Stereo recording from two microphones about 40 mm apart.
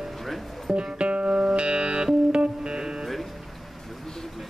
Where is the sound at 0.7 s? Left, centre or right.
Right.